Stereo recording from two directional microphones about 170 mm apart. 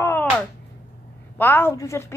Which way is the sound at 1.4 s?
10° left (ahead or behind).